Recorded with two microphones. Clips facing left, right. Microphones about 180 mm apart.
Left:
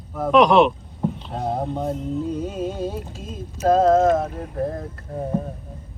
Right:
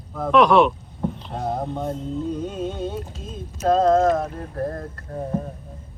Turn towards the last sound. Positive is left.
turn(degrees=0)  # may be behind; listen again after turning